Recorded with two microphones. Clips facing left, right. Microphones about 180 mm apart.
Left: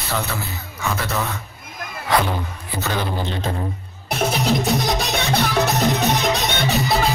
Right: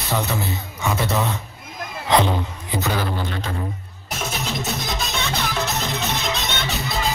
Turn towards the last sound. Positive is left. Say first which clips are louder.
# left 5 dB
turn(degrees=60)  # may be behind; listen again after turning